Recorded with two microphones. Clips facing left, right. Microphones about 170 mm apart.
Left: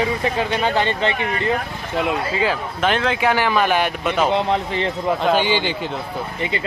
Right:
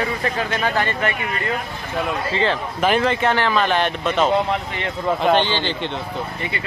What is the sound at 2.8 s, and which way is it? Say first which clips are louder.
Speech: right 1 dB; centre (ahead or behind).